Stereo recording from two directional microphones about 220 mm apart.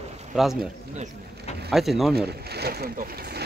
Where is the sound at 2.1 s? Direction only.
45° right (ahead or behind).